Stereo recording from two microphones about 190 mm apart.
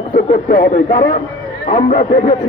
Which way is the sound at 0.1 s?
50° left (ahead or behind).